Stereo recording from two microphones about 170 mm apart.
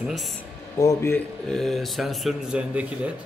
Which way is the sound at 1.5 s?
Centre (ahead or behind).